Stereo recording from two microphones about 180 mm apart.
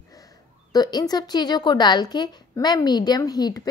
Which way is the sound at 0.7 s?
20° left (ahead or behind).